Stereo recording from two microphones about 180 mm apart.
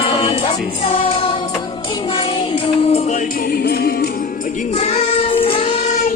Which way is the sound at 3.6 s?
60° left (ahead or behind).